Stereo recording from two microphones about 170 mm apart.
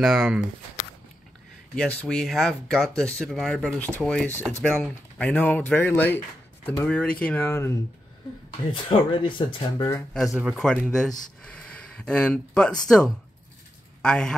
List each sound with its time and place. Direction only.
0.0 s speech: 5° right (ahead or behind)
1.8 s speech: 5° left (ahead or behind)
8.7 s speech: 30° left (ahead or behind)
9.8 s speech: 15° left (ahead or behind)
10.1 s speech: centre (ahead or behind)